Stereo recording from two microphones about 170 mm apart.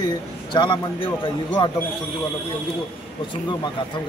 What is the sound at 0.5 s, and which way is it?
A man's voice, 30° left (ahead or behind).